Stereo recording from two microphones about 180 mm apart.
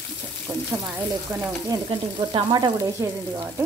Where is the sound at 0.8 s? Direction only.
10° right (ahead or behind).